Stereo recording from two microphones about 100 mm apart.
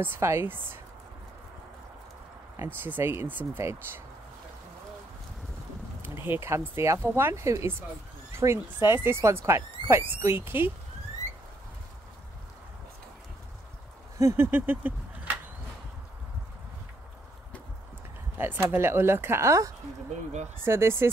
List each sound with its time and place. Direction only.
0.0 s speech: 25° right (ahead or behind)
2.5 s speech: 25° right (ahead or behind)
6.0 s speech: 20° right (ahead or behind)
14.1 s speech: 25° right (ahead or behind)
18.4 s speech: 20° right (ahead or behind)